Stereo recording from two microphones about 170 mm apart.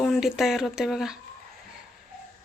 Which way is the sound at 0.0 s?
Centre (ahead or behind).